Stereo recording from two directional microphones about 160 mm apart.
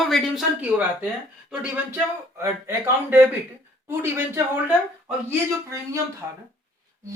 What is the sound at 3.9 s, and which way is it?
Speech, 15° right (ahead or behind).